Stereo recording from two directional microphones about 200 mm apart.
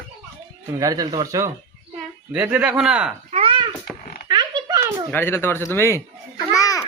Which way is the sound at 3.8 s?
40° left (ahead or behind).